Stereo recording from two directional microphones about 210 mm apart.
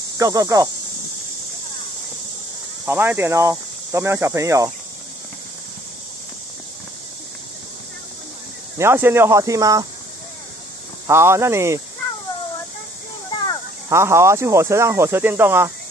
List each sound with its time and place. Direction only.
0.2 s speech: 15° right (ahead or behind)
2.8 s speech: 10° right (ahead or behind)
8.7 s speech: 10° right (ahead or behind)
11.1 s speech: 10° right (ahead or behind)
13.8 s speech: 15° right (ahead or behind)